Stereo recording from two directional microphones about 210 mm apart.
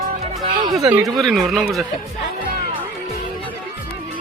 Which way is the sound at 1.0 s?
Centre (ahead or behind).